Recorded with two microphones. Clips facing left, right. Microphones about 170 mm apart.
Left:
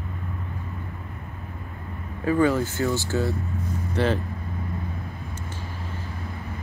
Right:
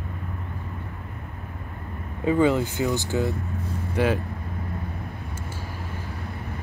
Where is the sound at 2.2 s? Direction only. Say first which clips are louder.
Right 1 dB; 20° right (ahead or behind).